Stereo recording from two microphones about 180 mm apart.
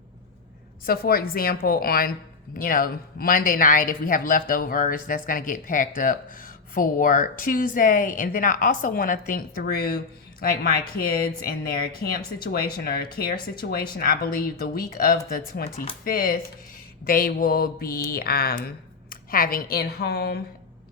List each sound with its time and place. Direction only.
0.9 s speech: 55° left (ahead or behind)